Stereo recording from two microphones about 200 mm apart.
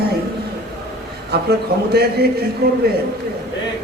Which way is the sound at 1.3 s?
55° right (ahead or behind).